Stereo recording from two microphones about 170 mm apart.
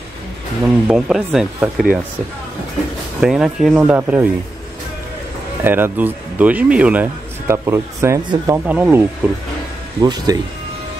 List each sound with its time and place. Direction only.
0.8 s speech: 5° right (ahead or behind)
3.2 s speech: 5° right (ahead or behind)
5.6 s speech: 10° right (ahead or behind)
10.0 s speech: 25° right (ahead or behind)